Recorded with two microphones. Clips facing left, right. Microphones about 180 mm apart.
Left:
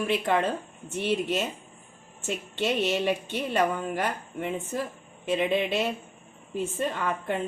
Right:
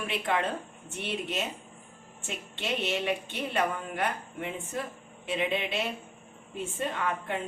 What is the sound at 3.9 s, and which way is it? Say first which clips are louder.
A woman's voice: left 2 dB; 35° left (ahead or behind).